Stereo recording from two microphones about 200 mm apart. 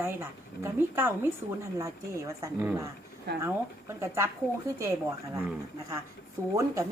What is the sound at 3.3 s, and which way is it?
Speech, 55° right (ahead or behind).